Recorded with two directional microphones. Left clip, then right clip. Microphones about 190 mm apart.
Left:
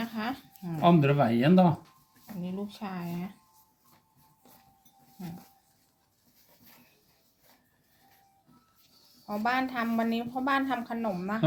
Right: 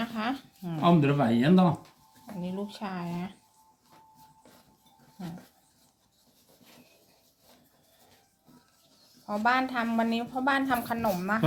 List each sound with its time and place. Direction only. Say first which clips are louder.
0.0 s a sound: right 3 dB; centre (ahead or behind)
0.8 s speech: left 1 dB; 50° left (ahead or behind)
2.4 s a woman's voice: right 2 dB; centre (ahead or behind)
9.2 s a woman's voice: right 3 dB; 5° left (ahead or behind)